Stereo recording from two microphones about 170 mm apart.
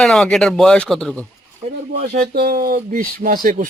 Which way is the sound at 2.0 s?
60° right (ahead or behind).